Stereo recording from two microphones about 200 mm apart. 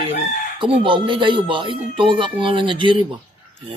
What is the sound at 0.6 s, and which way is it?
Speech, 25° right (ahead or behind).